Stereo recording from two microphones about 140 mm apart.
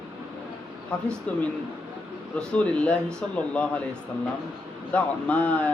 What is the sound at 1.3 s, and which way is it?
Speech, 10° left (ahead or behind).